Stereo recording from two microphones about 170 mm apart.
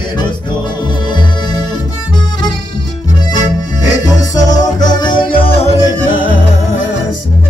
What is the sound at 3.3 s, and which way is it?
Music, 20° left (ahead or behind).